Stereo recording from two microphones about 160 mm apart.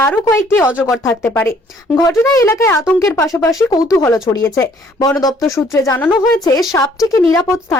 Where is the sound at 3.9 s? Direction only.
20° left (ahead or behind).